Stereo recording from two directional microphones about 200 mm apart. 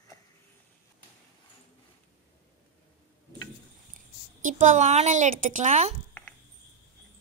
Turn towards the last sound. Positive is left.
turn(degrees=-35)  # may be behind; listen again after turning